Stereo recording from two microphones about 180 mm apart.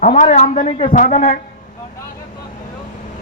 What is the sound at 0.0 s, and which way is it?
A man's voice, 40° left (ahead or behind).